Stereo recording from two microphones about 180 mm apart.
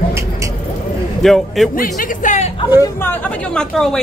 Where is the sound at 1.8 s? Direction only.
45° left (ahead or behind).